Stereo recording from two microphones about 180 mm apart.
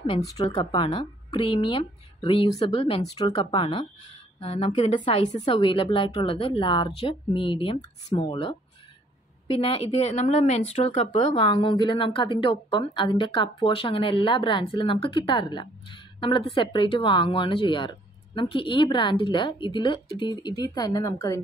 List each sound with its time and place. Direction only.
0.0 s speech: 25° left (ahead or behind)
3.2 s a woman's voice: 20° left (ahead or behind)